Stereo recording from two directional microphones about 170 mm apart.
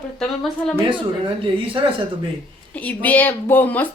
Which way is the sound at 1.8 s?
30° right (ahead or behind).